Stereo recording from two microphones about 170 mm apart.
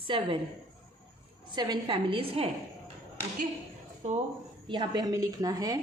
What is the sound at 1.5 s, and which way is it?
A woman's voice, 25° right (ahead or behind).